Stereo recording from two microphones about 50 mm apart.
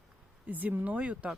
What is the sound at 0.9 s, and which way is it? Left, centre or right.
Speech, right.